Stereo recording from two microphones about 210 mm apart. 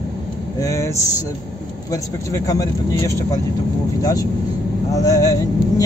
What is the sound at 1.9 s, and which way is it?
Speech, 15° left (ahead or behind).